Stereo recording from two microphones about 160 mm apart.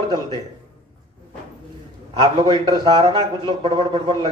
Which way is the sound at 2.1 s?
30° right (ahead or behind).